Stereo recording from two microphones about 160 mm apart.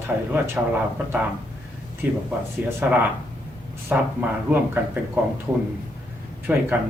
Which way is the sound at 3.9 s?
10° right (ahead or behind).